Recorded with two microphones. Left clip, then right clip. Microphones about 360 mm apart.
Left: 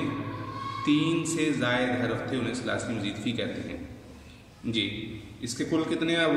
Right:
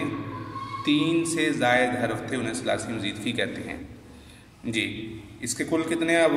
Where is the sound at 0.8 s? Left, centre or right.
Centre.